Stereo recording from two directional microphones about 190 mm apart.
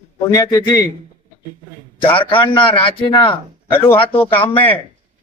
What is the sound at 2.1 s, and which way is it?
Speech, 25° left (ahead or behind).